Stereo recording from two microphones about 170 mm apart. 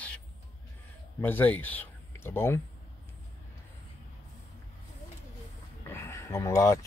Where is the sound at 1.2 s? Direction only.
10° left (ahead or behind).